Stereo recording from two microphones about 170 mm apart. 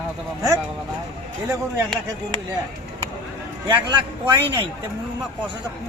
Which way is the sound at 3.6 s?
25° right (ahead or behind).